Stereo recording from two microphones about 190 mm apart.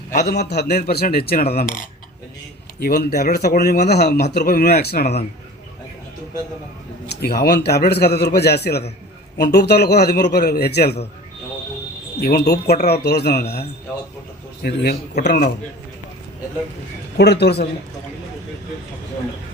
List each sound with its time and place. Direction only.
0.1 s speech: 60° left (ahead or behind)
2.8 s speech: 60° left (ahead or behind)
7.2 s speech: 55° left (ahead or behind)
12.2 s speech: 55° left (ahead or behind)
17.4 s speech: 60° left (ahead or behind)